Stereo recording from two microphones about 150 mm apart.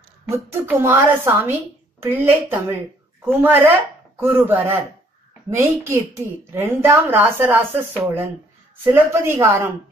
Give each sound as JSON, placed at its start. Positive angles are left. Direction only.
{"t": 0.3, "sound": "a woman's voice", "side_deg": -15}